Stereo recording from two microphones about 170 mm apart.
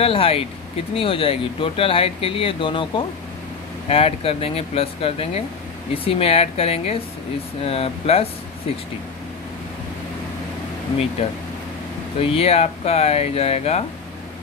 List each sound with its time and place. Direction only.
0.0 s speech: 35° left (ahead or behind)
3.9 s speech: 35° left (ahead or behind)
11.2 s speech: 35° left (ahead or behind)